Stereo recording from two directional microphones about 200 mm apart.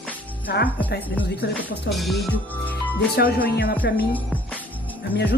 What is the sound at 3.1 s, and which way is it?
Speech, 50° left (ahead or behind).